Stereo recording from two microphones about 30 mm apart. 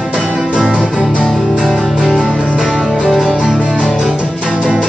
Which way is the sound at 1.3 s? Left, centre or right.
Centre.